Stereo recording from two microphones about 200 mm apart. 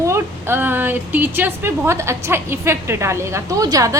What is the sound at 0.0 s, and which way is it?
A woman's voice, 15° right (ahead or behind).